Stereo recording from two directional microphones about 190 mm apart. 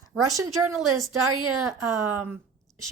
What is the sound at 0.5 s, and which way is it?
Speech, centre (ahead or behind).